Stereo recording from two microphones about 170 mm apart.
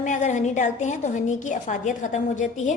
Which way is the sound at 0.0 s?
45° left (ahead or behind).